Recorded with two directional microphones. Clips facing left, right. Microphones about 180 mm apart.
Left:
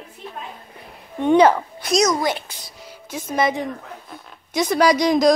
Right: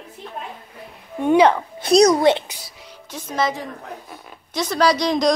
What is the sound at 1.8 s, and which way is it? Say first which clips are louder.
Speech: right 6 dB; 35° right (ahead or behind).